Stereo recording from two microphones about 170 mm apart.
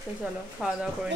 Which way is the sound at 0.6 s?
5° right (ahead or behind).